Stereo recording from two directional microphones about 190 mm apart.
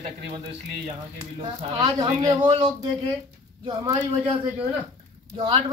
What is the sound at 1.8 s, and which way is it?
Speech, 20° right (ahead or behind).